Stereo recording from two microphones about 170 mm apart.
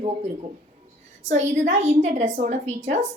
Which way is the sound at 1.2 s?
45° right (ahead or behind).